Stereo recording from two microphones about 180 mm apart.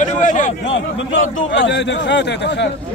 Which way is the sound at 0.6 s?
90° left.